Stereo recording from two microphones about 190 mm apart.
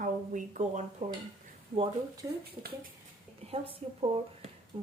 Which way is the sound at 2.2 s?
15° right (ahead or behind).